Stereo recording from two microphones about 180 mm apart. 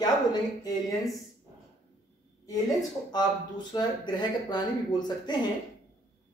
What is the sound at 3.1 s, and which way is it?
Speech, 25° left (ahead or behind).